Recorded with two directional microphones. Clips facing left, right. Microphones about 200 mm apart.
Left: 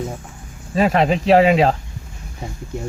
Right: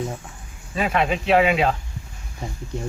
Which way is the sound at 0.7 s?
35° left (ahead or behind).